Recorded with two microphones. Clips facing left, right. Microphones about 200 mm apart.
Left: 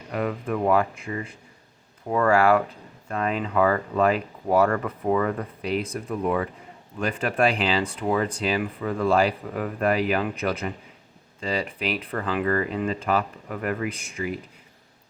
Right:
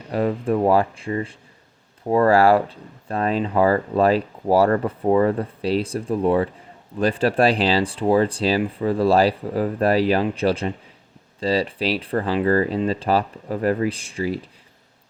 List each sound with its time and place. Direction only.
0.1 s speech: 30° right (ahead or behind)